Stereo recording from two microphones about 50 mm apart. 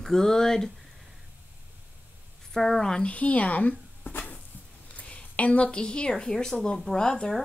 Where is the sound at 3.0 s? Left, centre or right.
Left; by 7.1 s centre.